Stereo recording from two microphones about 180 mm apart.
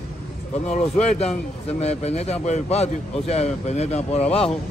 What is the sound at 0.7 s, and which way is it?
A man's voice, 35° left (ahead or behind).